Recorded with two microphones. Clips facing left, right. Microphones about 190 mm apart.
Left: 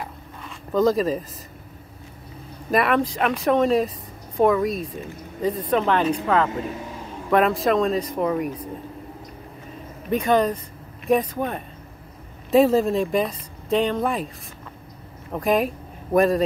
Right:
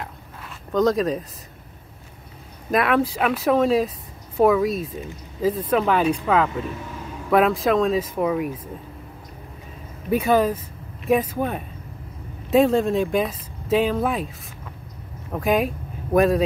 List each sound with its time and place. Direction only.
0.7 s speech: centre (ahead or behind)
2.7 s speech: centre (ahead or behind)
10.0 s speech: 5° right (ahead or behind)
15.3 s speech: centre (ahead or behind)